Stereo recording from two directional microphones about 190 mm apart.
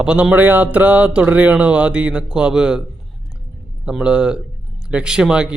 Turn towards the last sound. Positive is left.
turn(degrees=-5)  # may be behind; listen again after turning